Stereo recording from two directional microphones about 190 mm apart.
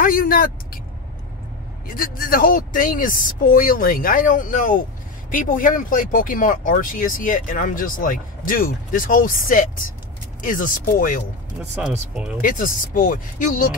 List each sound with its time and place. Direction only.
0.0 s speech: 45° left (ahead or behind)
1.9 s speech: 50° left (ahead or behind)
11.7 s speech: 5° right (ahead or behind)
12.4 s speech: 45° left (ahead or behind)